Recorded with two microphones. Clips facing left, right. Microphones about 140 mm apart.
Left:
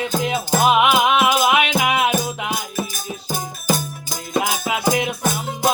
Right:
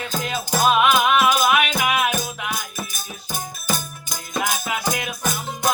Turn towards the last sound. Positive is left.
turn(degrees=25)  # may be behind; listen again after turning